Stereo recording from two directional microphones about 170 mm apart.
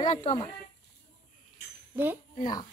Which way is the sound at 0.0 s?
40° left (ahead or behind).